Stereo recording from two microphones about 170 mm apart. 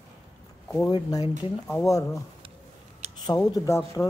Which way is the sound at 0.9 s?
20° left (ahead or behind).